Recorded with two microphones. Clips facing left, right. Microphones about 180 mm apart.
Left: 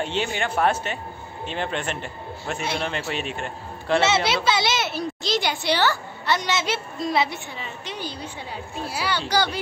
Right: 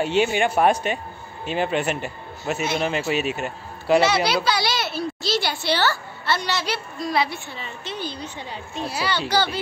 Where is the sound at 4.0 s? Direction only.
25° left (ahead or behind).